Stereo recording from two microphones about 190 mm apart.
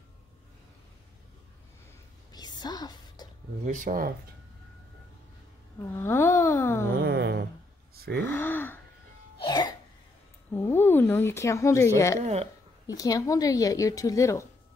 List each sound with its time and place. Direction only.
2.3 s music: 20° left (ahead or behind)
3.6 s speech: 40° right (ahead or behind)
5.8 s speech: 10° left (ahead or behind)
7.0 s a sound: 60° right (ahead or behind)
8.2 s speech: 10° left (ahead or behind)
9.4 s music: 25° left (ahead or behind)
10.5 s speech: 10° left (ahead or behind)
12.2 s speech: 35° right (ahead or behind)
12.8 s speech: 20° left (ahead or behind)